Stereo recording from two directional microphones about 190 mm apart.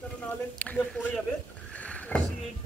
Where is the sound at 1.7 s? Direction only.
5° left (ahead or behind).